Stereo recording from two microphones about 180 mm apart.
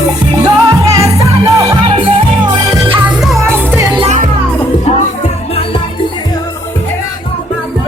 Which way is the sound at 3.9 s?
40° right (ahead or behind).